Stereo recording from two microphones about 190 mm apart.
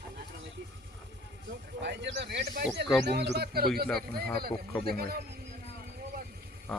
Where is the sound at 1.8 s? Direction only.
65° right (ahead or behind).